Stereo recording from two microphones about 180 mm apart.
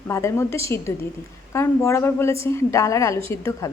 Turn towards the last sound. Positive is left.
turn(degrees=15)  # may be behind; listen again after turning